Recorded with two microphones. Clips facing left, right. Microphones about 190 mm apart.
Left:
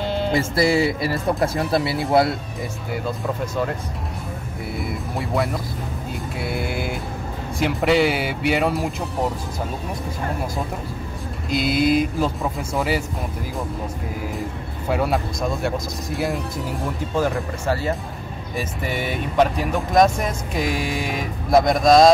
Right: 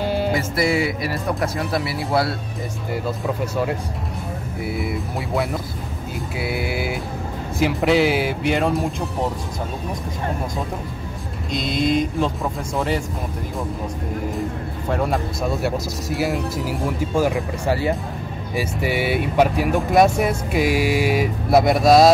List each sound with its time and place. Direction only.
0.0 s music: 10° right (ahead or behind)
0.3 s speech: 25° left (ahead or behind)
4.6 s speech: 5° right (ahead or behind)
11.5 s speech: 5° left (ahead or behind)
14.9 s speech: 5° left (ahead or behind)